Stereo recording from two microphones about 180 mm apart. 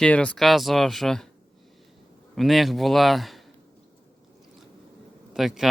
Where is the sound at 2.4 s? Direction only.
Centre (ahead or behind).